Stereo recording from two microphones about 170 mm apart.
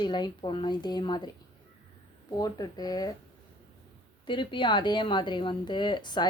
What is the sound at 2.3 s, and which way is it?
Speech, 25° left (ahead or behind).